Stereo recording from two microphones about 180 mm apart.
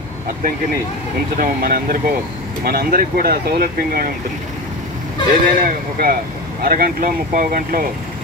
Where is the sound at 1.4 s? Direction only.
50° right (ahead or behind).